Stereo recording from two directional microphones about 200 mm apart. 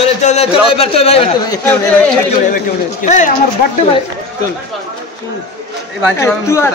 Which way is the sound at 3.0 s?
40° left (ahead or behind).